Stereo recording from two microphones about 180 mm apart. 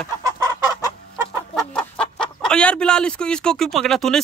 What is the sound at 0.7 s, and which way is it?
Fowl, 20° left (ahead or behind).